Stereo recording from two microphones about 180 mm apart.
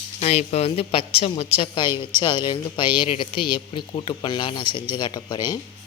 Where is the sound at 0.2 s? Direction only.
35° left (ahead or behind).